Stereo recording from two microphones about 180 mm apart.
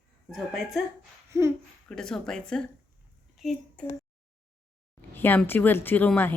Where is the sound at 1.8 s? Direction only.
5° left (ahead or behind).